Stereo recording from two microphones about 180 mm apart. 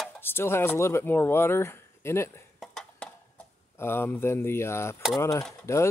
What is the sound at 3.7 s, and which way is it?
Speech, 15° left (ahead or behind).